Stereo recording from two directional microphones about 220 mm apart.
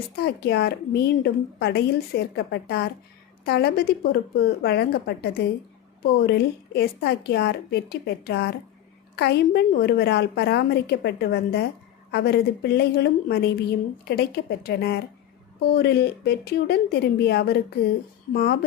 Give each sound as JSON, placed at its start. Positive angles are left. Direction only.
{"t": 0.2, "sound": "a woman's voice", "side_deg": 45}